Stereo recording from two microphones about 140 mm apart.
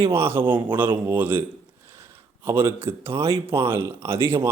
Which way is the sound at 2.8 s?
20° right (ahead or behind).